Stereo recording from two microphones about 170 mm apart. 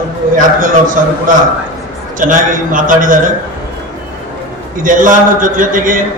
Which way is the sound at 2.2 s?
50° right (ahead or behind).